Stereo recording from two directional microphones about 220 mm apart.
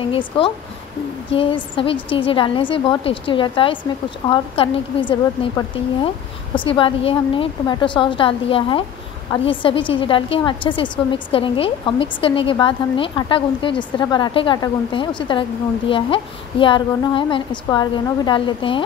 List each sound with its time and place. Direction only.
0.1 s a woman's voice: 25° left (ahead or behind)